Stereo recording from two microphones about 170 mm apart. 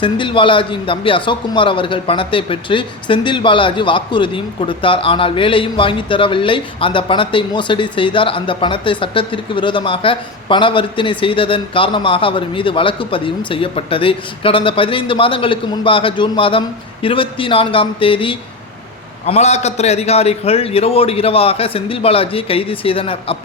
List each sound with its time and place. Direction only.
0.0 s speech: 30° left (ahead or behind)